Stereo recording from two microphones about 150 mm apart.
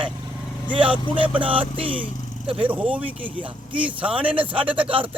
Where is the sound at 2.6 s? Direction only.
10° right (ahead or behind).